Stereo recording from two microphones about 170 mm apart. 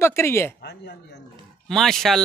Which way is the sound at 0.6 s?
75° left (ahead or behind).